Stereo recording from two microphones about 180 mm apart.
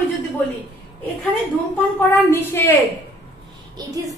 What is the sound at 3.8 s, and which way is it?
Speech, 20° right (ahead or behind).